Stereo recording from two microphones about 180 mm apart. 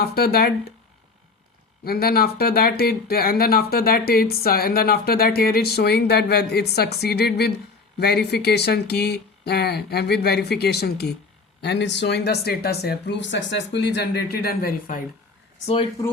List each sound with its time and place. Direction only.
0.0 s speech: 60° left (ahead or behind)
1.8 s speech: 55° left (ahead or behind)
11.6 s speech: 75° left (ahead or behind); by 15.0 s 55° left (ahead or behind)
15.6 s speech: 30° left (ahead or behind)